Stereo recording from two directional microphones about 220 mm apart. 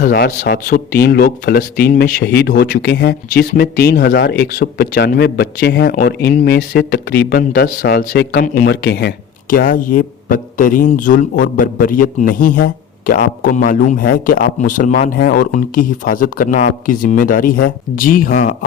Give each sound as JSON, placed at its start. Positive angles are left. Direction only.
{"t": 0.0, "sound": "speech", "side_deg": 40}
{"t": 8.6, "sound": "speech", "side_deg": 55}